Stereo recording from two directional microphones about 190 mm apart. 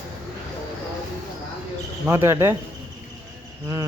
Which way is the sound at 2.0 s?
15° right (ahead or behind).